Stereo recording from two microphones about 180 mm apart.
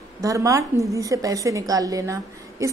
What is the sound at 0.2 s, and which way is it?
A woman's voice, 20° right (ahead or behind).